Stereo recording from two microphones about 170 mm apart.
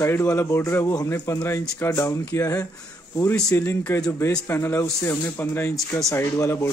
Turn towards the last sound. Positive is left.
turn(degrees=15)  # may be behind; listen again after turning